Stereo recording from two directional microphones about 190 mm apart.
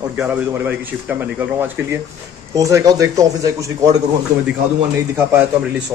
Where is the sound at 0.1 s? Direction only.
5° right (ahead or behind).